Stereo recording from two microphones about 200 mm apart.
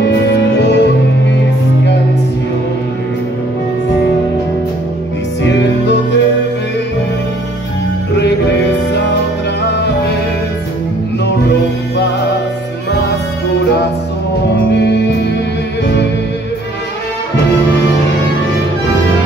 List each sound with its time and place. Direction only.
0.6 s music: 60° left (ahead or behind)
5.4 s music: 60° left (ahead or behind)
9.6 s music: 55° left (ahead or behind)
14.7 s music: 55° left (ahead or behind)